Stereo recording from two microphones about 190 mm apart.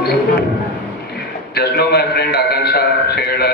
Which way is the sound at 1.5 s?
55° left (ahead or behind).